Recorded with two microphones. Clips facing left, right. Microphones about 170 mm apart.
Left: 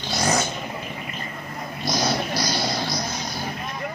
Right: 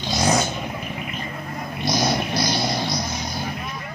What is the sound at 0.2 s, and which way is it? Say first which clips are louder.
Vehicle: right 2 dB; 15° right (ahead or behind).